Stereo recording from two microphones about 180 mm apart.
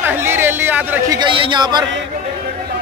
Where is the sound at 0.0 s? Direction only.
10° right (ahead or behind).